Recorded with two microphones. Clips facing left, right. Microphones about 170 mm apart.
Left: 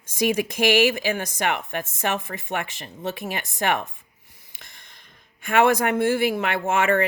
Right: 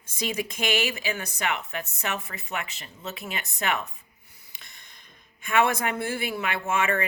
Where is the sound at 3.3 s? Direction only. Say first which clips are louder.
Left 3 dB; 55° left (ahead or behind).